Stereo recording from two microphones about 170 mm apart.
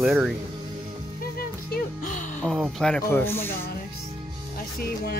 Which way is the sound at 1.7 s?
50° left (ahead or behind).